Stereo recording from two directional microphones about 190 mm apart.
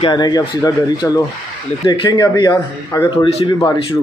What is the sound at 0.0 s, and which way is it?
Speech, 20° left (ahead or behind).